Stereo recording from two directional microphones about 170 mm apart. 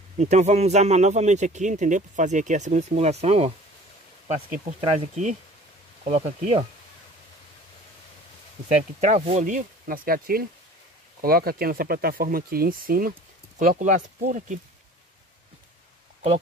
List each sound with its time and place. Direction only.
0.2 s speech: 40° right (ahead or behind)
4.7 s speech: 40° right (ahead or behind)
9.0 s speech: 45° right (ahead or behind)